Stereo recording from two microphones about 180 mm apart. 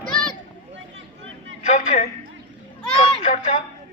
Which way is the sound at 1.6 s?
40° left (ahead or behind).